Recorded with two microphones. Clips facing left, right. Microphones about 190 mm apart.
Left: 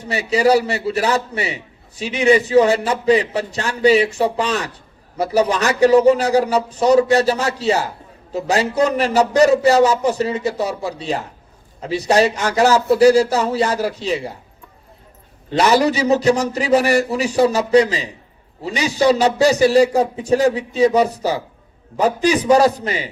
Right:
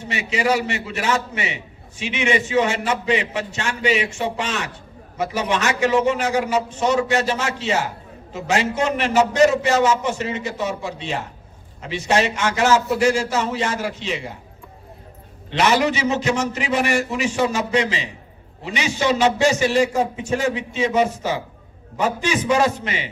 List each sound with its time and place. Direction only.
0.0 s a man's voice: 35° left (ahead or behind)
15.4 s a man's voice: 35° left (ahead or behind)